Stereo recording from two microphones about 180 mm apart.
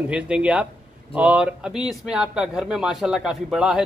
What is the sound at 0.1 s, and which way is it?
A man's voice, 5° right (ahead or behind).